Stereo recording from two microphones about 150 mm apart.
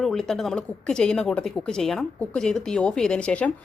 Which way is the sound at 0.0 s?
5° left (ahead or behind).